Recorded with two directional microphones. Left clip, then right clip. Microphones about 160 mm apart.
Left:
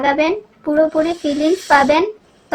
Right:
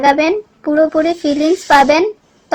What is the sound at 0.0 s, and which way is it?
A child's voice, 40° right (ahead or behind).